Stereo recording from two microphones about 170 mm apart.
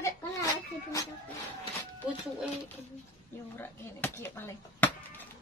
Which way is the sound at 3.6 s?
15° left (ahead or behind).